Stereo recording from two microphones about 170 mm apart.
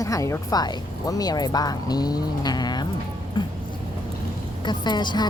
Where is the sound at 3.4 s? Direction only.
25° left (ahead or behind).